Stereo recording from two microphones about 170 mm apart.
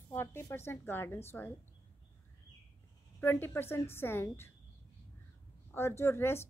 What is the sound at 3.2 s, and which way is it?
A woman's voice, 10° left (ahead or behind).